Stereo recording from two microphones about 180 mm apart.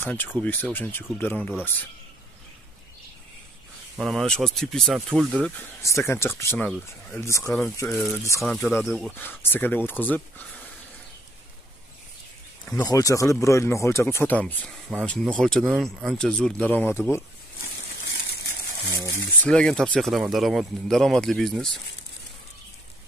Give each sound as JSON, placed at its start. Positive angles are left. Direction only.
{"t": 0.0, "sound": "speech", "side_deg": 10}
{"t": 3.9, "sound": "speech", "side_deg": 0}
{"t": 5.6, "sound": "speech", "side_deg": 15}
{"t": 8.4, "sound": "speech", "side_deg": 0}
{"t": 9.1, "sound": "speech", "side_deg": 10}
{"t": 12.7, "sound": "speech", "side_deg": 20}
{"t": 17.6, "sound": "a sound", "side_deg": 75}
{"t": 18.8, "sound": "speech", "side_deg": -20}
{"t": 19.4, "sound": "speech", "side_deg": 5}